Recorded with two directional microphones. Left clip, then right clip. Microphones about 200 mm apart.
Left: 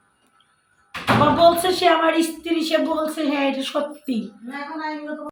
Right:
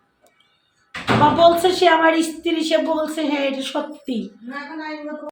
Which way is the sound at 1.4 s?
5° right (ahead or behind).